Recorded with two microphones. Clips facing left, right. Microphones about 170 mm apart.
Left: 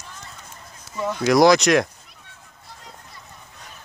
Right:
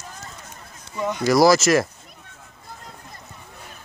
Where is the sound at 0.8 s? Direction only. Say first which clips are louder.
Even; centre (ahead or behind).